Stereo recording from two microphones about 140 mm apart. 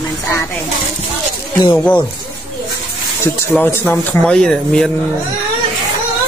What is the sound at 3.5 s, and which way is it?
Speech, 15° left (ahead or behind).